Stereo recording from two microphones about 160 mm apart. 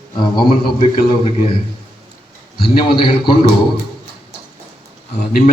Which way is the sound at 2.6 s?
30° left (ahead or behind).